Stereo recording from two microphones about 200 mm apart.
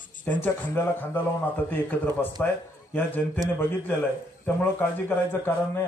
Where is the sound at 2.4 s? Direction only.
10° left (ahead or behind).